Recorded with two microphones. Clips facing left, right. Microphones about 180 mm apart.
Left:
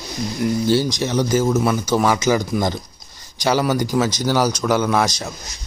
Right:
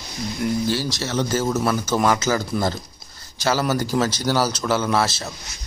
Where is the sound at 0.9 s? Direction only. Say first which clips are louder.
Left 4 dB; 15° left (ahead or behind).